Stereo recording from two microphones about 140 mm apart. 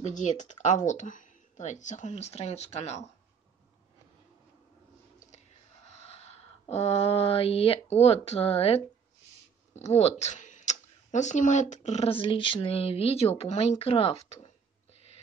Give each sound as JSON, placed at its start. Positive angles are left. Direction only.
{"t": 0.0, "sound": "speech", "side_deg": 55}
{"t": 5.9, "sound": "a sound", "side_deg": 50}
{"t": 9.8, "sound": "speech", "side_deg": 50}